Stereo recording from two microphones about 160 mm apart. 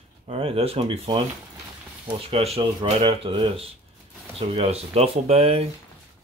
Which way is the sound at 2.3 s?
40° right (ahead or behind).